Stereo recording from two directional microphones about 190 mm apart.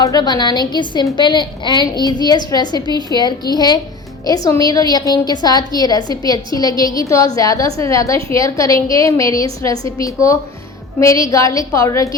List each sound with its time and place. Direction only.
0.0 s a woman's voice: 20° left (ahead or behind)